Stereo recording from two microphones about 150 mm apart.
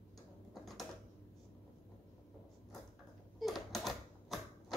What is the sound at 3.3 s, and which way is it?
Typewriter, centre (ahead or behind).